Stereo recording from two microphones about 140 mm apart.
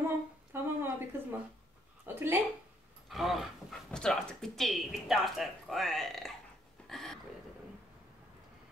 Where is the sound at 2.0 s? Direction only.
15° right (ahead or behind).